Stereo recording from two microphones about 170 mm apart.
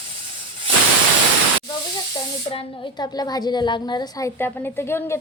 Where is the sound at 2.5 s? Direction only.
25° left (ahead or behind).